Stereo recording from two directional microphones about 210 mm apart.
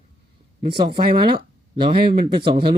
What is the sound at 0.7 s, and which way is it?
Speech, 25° right (ahead or behind).